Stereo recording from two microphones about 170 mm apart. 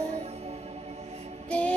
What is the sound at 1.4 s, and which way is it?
Music, 5° left (ahead or behind).